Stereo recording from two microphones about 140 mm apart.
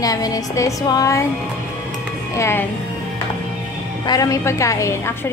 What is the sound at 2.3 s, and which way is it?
Speech, 20° left (ahead or behind).